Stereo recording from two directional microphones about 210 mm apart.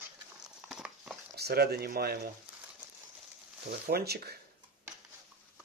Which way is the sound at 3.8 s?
50° right (ahead or behind).